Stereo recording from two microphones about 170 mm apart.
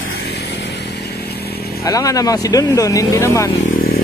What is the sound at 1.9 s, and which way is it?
Speech, 20° left (ahead or behind).